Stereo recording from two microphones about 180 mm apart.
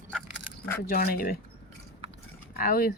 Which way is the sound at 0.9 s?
55° left (ahead or behind).